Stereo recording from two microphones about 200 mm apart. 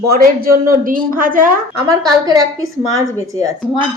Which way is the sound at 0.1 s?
45° right (ahead or behind).